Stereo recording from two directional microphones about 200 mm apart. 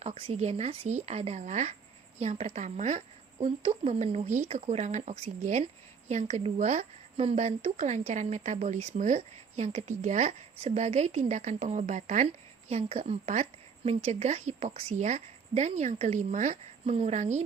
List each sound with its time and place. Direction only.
0.0 s speech: 30° right (ahead or behind)